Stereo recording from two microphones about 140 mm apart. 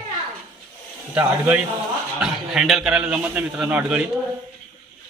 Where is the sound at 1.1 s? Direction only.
10° right (ahead or behind).